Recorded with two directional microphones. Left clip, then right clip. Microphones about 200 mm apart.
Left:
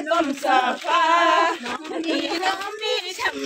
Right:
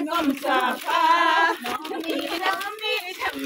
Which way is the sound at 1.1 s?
35° left (ahead or behind).